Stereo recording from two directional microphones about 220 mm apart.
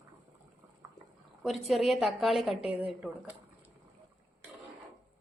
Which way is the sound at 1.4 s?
Centre (ahead or behind).